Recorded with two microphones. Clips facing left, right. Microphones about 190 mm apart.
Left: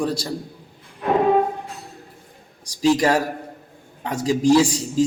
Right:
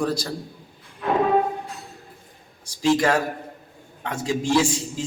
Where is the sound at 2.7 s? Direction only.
35° left (ahead or behind).